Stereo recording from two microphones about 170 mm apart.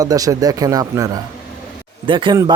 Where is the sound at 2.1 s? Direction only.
30° right (ahead or behind).